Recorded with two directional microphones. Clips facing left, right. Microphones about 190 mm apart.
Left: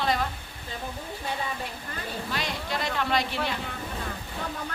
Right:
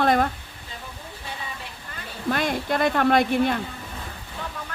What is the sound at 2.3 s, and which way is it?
A woman's voice, 55° right (ahead or behind).